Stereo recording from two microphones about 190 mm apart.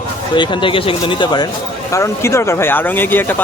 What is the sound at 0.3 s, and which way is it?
A man's voice, 25° left (ahead or behind).